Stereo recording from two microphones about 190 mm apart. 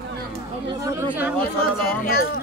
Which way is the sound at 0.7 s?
20° right (ahead or behind).